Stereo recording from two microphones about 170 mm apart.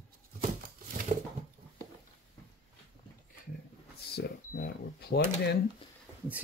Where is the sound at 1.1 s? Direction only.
50° right (ahead or behind).